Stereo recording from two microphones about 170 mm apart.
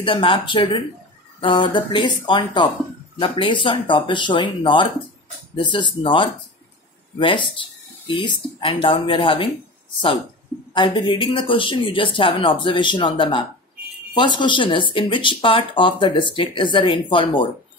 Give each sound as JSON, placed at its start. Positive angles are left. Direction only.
{"t": 0.0, "sound": "speech", "side_deg": 30}
{"t": 10.7, "sound": "speech", "side_deg": 25}